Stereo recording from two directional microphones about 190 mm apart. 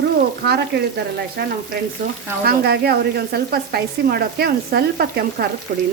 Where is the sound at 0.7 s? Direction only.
55° right (ahead or behind).